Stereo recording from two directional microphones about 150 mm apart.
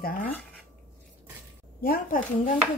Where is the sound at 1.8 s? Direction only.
75° left (ahead or behind).